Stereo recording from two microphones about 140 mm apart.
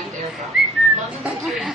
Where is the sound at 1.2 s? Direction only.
Centre (ahead or behind).